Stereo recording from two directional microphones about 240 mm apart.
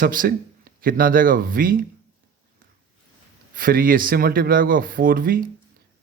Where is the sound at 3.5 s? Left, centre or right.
Right.